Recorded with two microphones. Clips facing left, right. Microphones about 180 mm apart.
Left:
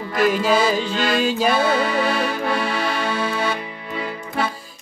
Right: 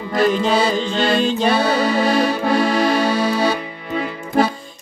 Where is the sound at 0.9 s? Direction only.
30° right (ahead or behind).